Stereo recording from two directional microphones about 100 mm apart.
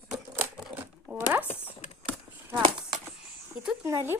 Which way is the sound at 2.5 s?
50° right (ahead or behind).